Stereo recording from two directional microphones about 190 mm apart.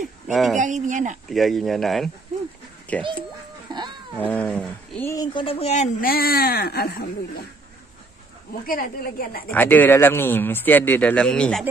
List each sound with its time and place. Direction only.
0.3 s speech: centre (ahead or behind)
0.8 s speech: 40° right (ahead or behind)
1.3 s speech: centre (ahead or behind)
3.7 s a sound: 25° right (ahead or behind)
4.2 s speech: 5° left (ahead or behind)
5.1 s speech: 20° left (ahead or behind); by 7.1 s 55° left (ahead or behind)
8.6 s speech: 50° left (ahead or behind)
9.5 s speech: 10° left (ahead or behind)